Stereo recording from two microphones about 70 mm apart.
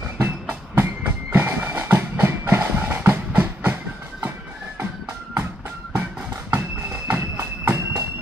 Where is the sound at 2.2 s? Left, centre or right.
Right.